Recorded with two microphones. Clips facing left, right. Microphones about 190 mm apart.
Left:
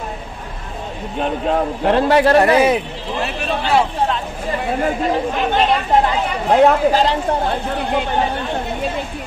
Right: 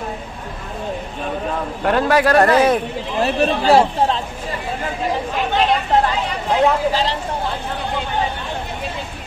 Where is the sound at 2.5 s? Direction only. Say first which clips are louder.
Left 1 dB; 10° left (ahead or behind).